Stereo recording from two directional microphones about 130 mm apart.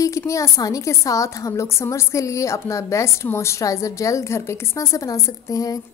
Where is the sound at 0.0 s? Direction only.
25° left (ahead or behind).